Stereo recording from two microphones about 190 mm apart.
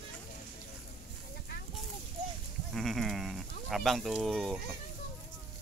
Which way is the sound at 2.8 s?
Centre (ahead or behind).